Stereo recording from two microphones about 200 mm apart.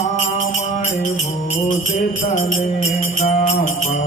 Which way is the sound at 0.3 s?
35° left (ahead or behind).